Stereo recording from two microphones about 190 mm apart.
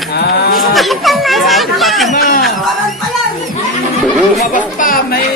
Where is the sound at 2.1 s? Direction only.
50° left (ahead or behind).